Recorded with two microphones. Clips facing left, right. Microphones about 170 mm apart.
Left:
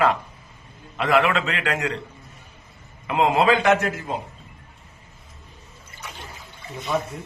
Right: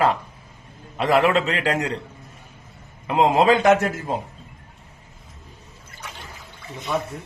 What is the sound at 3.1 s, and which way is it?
Speech, 40° right (ahead or behind).